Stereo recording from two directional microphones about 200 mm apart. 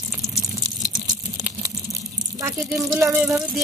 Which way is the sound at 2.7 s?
Centre (ahead or behind).